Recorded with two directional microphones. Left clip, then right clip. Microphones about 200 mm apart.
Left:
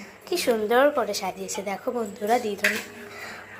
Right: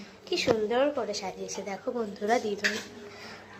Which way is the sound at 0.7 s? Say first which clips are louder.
Left 7 dB; 20° left (ahead or behind).